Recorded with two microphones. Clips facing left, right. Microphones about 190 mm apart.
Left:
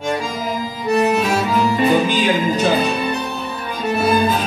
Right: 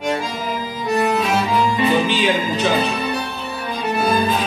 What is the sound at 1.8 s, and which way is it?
Music, 45° left (ahead or behind).